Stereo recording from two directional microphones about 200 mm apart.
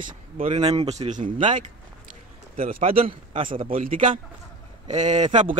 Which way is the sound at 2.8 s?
30° right (ahead or behind).